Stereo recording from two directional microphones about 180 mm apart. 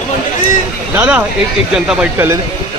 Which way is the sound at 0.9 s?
10° right (ahead or behind).